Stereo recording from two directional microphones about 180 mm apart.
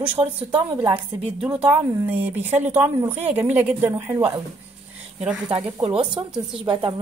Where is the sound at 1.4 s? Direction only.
5° right (ahead or behind).